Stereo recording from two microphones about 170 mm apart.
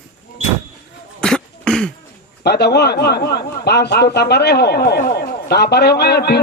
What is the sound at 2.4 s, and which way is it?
A man's voice, 75° left (ahead or behind).